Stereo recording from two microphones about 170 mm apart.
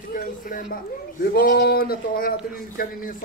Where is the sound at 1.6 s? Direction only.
65° left (ahead or behind).